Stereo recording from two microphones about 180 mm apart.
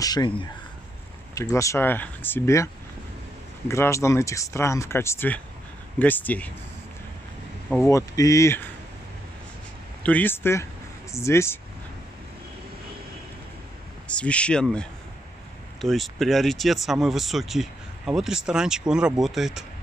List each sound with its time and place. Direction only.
0.0 s speech: 25° left (ahead or behind)
7.8 s speech: 15° left (ahead or behind)
10.0 s speech: 10° left (ahead or behind)
14.0 s speech: 5° left (ahead or behind)